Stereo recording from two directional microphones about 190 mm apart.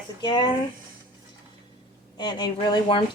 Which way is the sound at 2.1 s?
25° left (ahead or behind).